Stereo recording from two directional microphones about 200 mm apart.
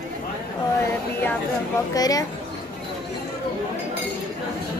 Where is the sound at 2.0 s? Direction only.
20° left (ahead or behind).